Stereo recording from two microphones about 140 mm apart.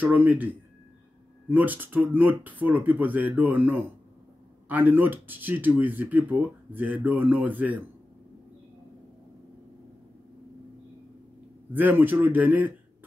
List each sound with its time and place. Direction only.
0.0 s speech: 10° right (ahead or behind)
1.5 s speech: 15° right (ahead or behind)
11.7 s speech: 15° right (ahead or behind)